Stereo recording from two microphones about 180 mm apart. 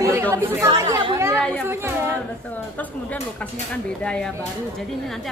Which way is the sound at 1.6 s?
15° right (ahead or behind).